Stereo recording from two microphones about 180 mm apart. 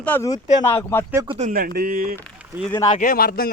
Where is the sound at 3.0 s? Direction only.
55° left (ahead or behind).